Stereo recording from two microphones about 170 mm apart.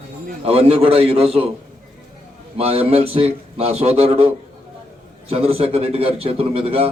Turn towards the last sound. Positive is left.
turn(degrees=-35)  # may be behind; listen again after turning